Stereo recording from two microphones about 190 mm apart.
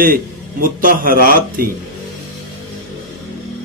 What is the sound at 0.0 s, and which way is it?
A man's voice, 45° right (ahead or behind).